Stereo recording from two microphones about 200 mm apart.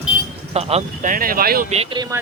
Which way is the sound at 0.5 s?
30° right (ahead or behind).